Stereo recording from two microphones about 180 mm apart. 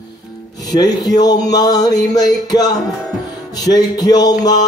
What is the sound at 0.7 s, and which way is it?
Music, 20° left (ahead or behind).